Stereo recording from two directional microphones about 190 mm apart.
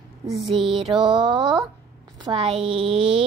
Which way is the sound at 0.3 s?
Centre (ahead or behind).